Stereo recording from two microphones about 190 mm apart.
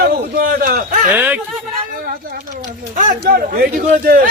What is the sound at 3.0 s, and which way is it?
A man's voice, 45° right (ahead or behind).